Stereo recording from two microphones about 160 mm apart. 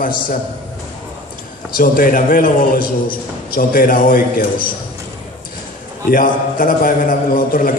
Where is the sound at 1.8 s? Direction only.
60° left (ahead or behind).